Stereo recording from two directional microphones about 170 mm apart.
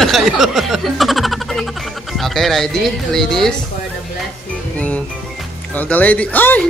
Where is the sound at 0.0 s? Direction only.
Centre (ahead or behind).